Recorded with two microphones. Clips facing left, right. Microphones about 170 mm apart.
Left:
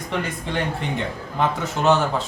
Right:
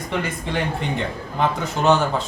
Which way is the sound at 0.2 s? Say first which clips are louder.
Right 1 dB; centre (ahead or behind).